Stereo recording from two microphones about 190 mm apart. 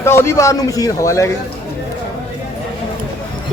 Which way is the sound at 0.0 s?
15° left (ahead or behind).